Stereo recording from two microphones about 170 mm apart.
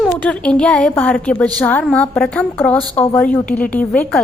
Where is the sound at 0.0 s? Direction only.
5° left (ahead or behind).